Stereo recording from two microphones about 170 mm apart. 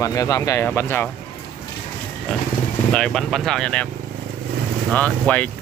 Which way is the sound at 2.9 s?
5° left (ahead or behind).